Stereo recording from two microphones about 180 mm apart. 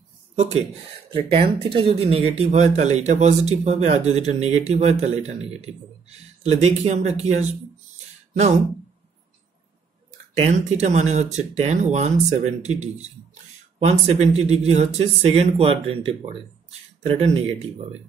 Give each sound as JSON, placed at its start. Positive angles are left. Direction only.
{"t": 0.4, "sound": "speech", "side_deg": -35}
{"t": 10.4, "sound": "speech", "side_deg": -40}